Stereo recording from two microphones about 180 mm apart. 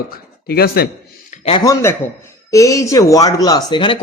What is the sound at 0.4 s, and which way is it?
Speech, 60° left (ahead or behind).